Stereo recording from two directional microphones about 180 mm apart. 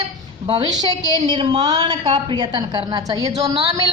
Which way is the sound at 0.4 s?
25° right (ahead or behind).